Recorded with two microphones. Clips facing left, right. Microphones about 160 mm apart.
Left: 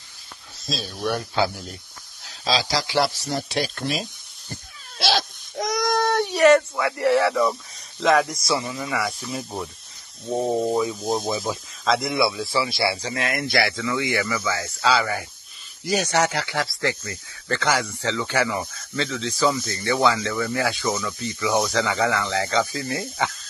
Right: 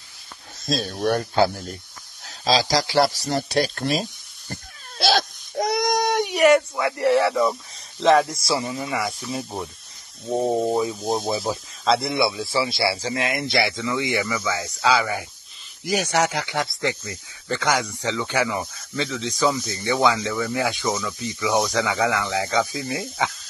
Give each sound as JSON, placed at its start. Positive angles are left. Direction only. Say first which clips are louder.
{"t": 0.7, "sound": "speech", "louder": "right 4 dB", "side_deg": -50}
{"t": 2.2, "sound": "a sound", "louder": "right 3 dB", "side_deg": -40}
{"t": 5.7, "sound": "speech", "louder": "even", "side_deg": -20}
{"t": 10.3, "sound": "speech", "louder": "right 1 dB", "side_deg": 0}
{"t": 11.2, "sound": "speech", "louder": "right 1 dB", "side_deg": -35}